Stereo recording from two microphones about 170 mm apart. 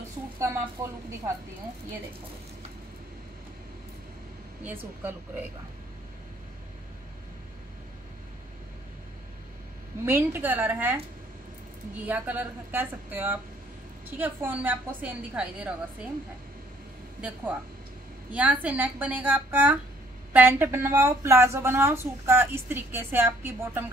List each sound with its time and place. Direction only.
0.8 s a woman's voice: 15° right (ahead or behind)
4.6 s a woman's voice: 10° right (ahead or behind)
10.0 s a woman's voice: 15° right (ahead or behind)
12.1 s a woman's voice: 10° right (ahead or behind)
18.3 s a woman's voice: 10° right (ahead or behind)